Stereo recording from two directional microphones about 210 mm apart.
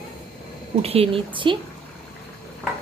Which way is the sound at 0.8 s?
30° right (ahead or behind).